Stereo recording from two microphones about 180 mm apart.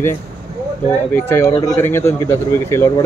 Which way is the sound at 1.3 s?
15° left (ahead or behind).